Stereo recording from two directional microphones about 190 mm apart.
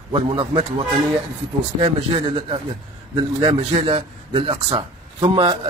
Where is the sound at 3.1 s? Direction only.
30° right (ahead or behind).